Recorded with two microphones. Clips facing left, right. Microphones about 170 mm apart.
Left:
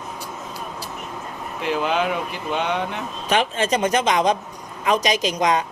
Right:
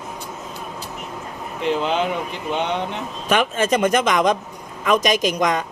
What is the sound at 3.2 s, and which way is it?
Speech, 50° right (ahead or behind).